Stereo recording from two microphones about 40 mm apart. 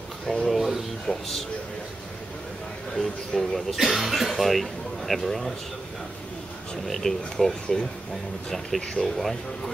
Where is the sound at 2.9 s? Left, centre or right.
Centre.